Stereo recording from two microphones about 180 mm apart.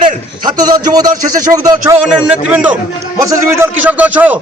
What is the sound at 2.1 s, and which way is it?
Speech, 5° right (ahead or behind).